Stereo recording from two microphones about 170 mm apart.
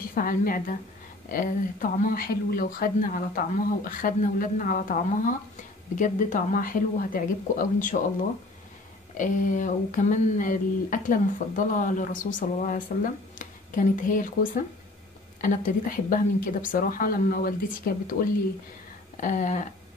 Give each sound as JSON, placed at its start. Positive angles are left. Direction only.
{"t": 0.1, "sound": "speech", "side_deg": 55}
{"t": 9.1, "sound": "speech", "side_deg": 50}
{"t": 15.4, "sound": "speech", "side_deg": 55}
{"t": 19.1, "sound": "speech", "side_deg": 50}